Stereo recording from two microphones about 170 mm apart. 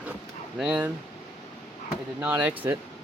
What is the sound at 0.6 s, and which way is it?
Speech, 10° right (ahead or behind).